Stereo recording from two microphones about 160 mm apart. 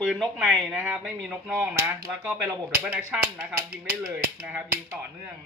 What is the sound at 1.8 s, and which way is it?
Speech, 15° right (ahead or behind).